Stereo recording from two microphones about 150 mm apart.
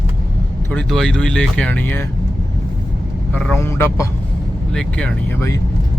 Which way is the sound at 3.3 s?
10° left (ahead or behind).